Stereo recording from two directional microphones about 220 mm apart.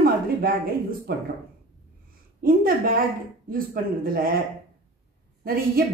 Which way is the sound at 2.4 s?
40° right (ahead or behind).